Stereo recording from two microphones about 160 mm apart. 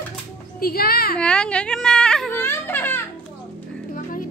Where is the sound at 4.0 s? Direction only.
60° left (ahead or behind).